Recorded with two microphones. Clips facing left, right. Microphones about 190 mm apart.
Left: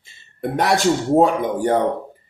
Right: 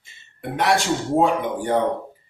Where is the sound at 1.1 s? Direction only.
40° left (ahead or behind).